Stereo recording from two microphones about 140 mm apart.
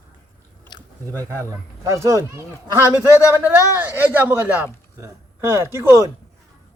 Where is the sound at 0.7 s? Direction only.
30° left (ahead or behind).